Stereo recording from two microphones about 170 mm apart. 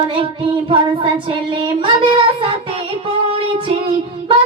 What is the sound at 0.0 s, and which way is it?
Child singing, 30° right (ahead or behind).